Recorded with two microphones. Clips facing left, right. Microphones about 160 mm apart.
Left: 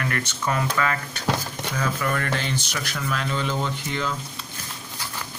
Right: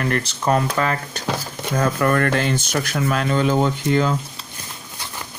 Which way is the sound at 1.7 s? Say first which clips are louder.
Right 8 dB; 50° right (ahead or behind).